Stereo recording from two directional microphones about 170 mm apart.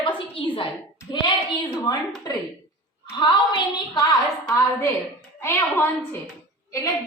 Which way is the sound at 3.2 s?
25° left (ahead or behind).